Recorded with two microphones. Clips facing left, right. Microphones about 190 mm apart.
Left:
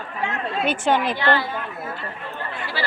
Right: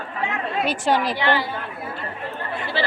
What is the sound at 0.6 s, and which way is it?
Speech, 35° right (ahead or behind).